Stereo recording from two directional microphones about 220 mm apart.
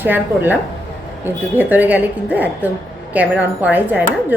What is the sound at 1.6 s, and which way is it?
A woman's voice, 10° right (ahead or behind).